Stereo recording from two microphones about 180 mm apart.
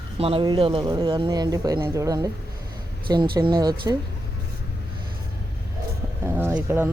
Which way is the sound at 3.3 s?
20° right (ahead or behind).